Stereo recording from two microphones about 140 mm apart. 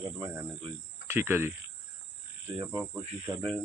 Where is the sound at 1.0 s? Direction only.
15° right (ahead or behind).